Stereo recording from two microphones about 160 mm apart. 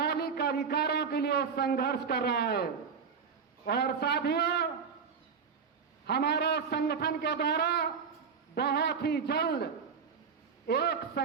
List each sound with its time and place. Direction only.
0.0 s a man's voice: 85° left
3.7 s a man's voice: 90° left
6.1 s a man's voice: 90° left
10.7 s a man's voice: 90° left